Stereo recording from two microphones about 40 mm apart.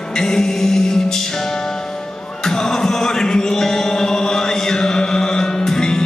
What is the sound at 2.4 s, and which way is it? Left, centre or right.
Music, centre.